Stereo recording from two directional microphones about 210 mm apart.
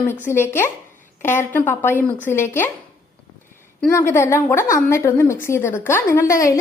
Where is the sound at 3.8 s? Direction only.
10° left (ahead or behind).